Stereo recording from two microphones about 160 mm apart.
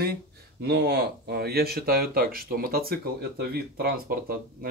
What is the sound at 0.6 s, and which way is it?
Speech, 90° right.